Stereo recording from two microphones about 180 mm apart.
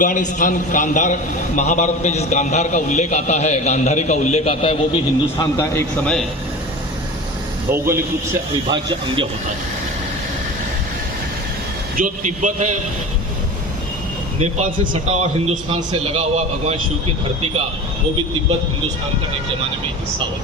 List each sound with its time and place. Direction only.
0.0 s a man's voice: 45° left (ahead or behind)
5.4 s a man's voice: 15° left (ahead or behind)
7.7 s a man's voice: 15° right (ahead or behind)
8.7 s speech: 25° right (ahead or behind)
11.9 s a man's voice: 45° right (ahead or behind)
14.3 s a man's voice: 40° right (ahead or behind)